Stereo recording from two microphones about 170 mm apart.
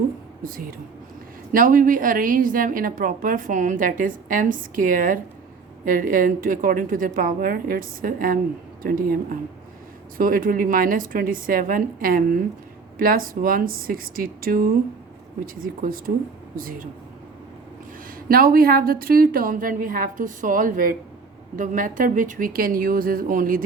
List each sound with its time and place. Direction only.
0.4 s a woman's voice: 60° right (ahead or behind)
15.6 s a woman's voice: 55° right (ahead or behind)
18.3 s a woman's voice: 60° right (ahead or behind)